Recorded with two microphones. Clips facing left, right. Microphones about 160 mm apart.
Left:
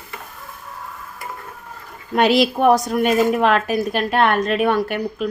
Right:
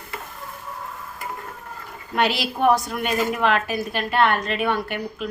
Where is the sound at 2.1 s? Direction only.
45° left (ahead or behind).